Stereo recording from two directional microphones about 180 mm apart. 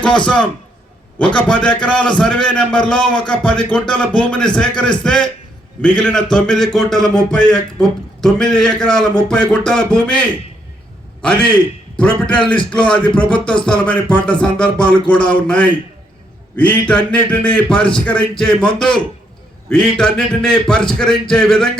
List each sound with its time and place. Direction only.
1.2 s speech: 5° left (ahead or behind)
11.9 s speech: 5° left (ahead or behind)
15.0 s a man's voice: 25° left (ahead or behind)
15.3 s speech: 5° left (ahead or behind)